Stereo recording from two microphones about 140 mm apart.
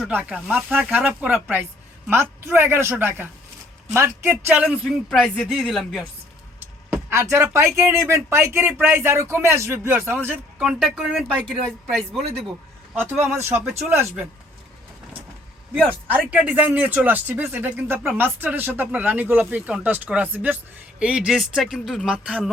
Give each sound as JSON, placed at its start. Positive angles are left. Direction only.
{"t": 0.0, "sound": "speech", "side_deg": -10}
{"t": 5.0, "sound": "speech", "side_deg": 0}
{"t": 6.9, "sound": "speech", "side_deg": -15}
{"t": 10.6, "sound": "speech", "side_deg": 0}
{"t": 12.9, "sound": "speech", "side_deg": -15}
{"t": 16.0, "sound": "speech", "side_deg": -10}